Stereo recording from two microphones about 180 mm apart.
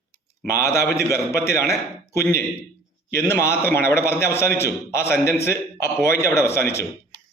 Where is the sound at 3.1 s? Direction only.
15° left (ahead or behind).